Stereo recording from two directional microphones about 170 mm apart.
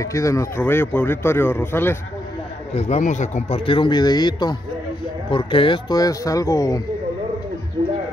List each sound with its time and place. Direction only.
0.0 s speech: 20° left (ahead or behind)
2.7 s speech: 40° left (ahead or behind); by 6.8 s 20° left (ahead or behind)